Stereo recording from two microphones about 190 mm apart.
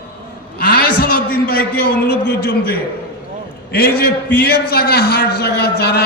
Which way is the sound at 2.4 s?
50° left (ahead or behind).